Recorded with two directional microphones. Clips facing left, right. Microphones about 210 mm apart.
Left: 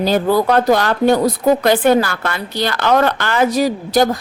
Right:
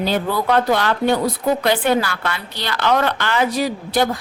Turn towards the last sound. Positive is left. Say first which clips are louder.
# left 4 dB
turn(degrees=40)  # may be behind; listen again after turning